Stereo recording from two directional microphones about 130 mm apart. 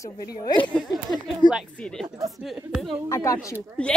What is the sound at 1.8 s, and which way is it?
Speech, 5° left (ahead or behind).